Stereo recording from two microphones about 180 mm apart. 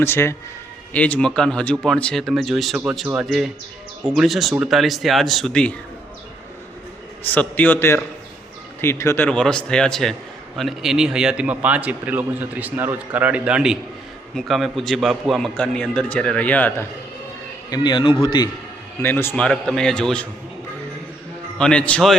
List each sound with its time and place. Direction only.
0.0 s a man's voice: 15° left (ahead or behind)
7.3 s a man's voice: 10° left (ahead or behind)
17.7 s a man's voice: 25° left (ahead or behind)
19.0 s a man's voice: 10° left (ahead or behind)
21.6 s a man's voice: 5° left (ahead or behind)